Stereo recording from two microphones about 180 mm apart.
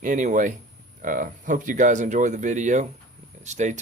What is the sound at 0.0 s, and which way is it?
Speech, 45° right (ahead or behind).